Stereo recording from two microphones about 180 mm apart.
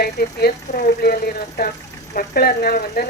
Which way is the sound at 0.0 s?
60° left (ahead or behind).